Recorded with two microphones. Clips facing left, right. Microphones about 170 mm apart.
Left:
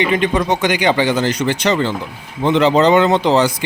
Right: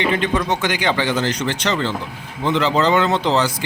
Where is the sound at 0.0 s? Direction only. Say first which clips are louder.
Left 3 dB; 15° left (ahead or behind).